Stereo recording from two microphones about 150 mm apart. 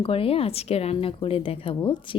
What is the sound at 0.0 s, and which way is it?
Speech, 40° left (ahead or behind).